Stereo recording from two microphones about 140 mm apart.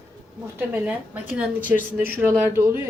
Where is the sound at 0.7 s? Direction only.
10° right (ahead or behind).